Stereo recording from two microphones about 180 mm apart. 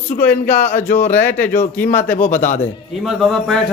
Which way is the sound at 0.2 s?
10° left (ahead or behind).